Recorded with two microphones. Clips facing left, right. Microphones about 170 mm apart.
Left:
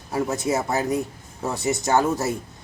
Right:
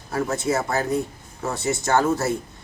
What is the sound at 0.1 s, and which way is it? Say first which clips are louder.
Speech: even; 15° left (ahead or behind).